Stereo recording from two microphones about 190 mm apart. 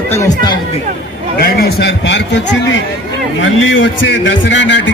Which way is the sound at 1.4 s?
55° left (ahead or behind).